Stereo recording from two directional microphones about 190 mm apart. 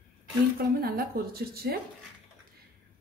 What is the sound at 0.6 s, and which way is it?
A woman's voice, 50° right (ahead or behind).